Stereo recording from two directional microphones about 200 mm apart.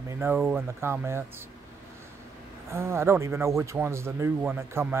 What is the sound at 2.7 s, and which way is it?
Speech, 15° right (ahead or behind).